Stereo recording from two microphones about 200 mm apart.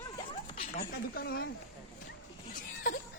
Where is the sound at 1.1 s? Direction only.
45° left (ahead or behind).